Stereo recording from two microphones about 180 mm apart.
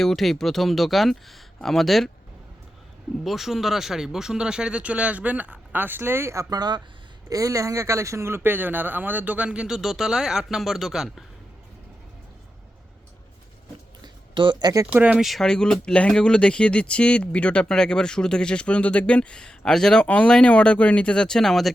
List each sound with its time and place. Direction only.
0.0 s speech: centre (ahead or behind)
3.2 s speech: centre (ahead or behind)
14.0 s a sound: 25° right (ahead or behind)
14.8 s speech: 5° right (ahead or behind)